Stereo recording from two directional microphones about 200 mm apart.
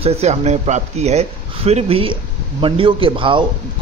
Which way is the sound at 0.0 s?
35° right (ahead or behind).